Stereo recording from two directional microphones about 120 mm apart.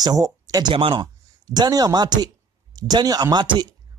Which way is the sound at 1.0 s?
30° right (ahead or behind).